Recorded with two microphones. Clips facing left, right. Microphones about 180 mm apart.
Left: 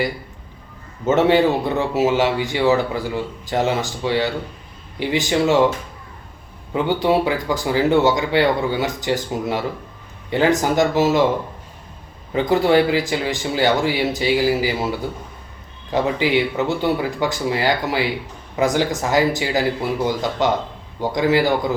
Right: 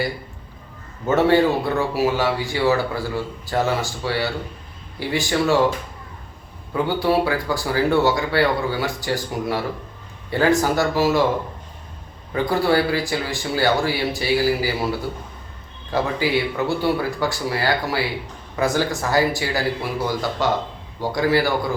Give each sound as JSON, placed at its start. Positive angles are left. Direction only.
{"t": 1.0, "sound": "speech", "side_deg": 20}
{"t": 6.7, "sound": "speech", "side_deg": 20}
{"t": 12.3, "sound": "speech", "side_deg": 20}
{"t": 15.9, "sound": "speech", "side_deg": 20}